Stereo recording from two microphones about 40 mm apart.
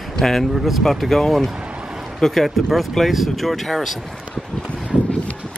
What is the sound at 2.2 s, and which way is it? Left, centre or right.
Speech, centre.